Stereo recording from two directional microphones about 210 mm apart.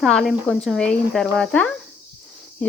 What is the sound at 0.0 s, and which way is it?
Speech, centre (ahead or behind).